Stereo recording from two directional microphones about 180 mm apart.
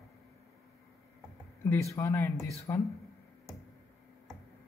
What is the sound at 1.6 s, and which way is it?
Speech, 15° left (ahead or behind).